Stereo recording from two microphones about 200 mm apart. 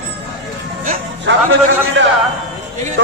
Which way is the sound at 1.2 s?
65° right (ahead or behind).